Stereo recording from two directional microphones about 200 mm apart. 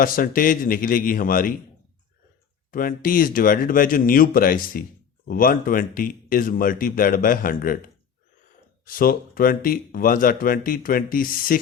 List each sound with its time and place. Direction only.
0.0 s speech: 45° left (ahead or behind)
2.7 s speech: 45° left (ahead or behind)
8.9 s speech: 45° left (ahead or behind)